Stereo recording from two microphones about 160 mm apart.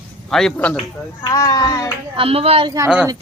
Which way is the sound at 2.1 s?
35° right (ahead or behind).